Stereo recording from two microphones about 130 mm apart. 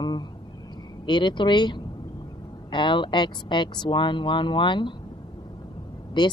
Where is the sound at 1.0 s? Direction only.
35° left (ahead or behind).